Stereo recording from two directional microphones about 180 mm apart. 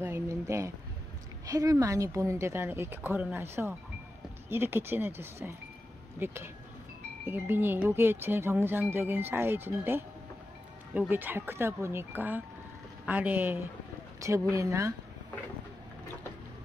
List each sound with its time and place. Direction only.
0.0 s speech: 15° right (ahead or behind)